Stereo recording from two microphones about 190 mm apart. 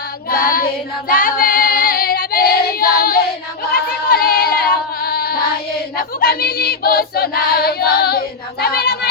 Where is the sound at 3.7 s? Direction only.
50° left (ahead or behind).